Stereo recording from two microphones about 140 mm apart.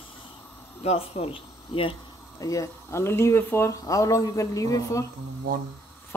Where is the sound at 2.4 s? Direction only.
25° left (ahead or behind).